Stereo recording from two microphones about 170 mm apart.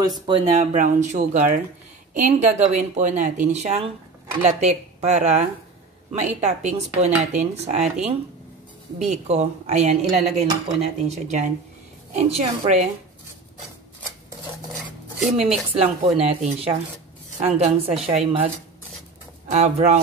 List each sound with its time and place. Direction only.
0.3 s speech: 45° right (ahead or behind)
8.9 s speech: 45° right (ahead or behind)
15.7 s speech: 35° right (ahead or behind)
19.5 s speech: 40° right (ahead or behind)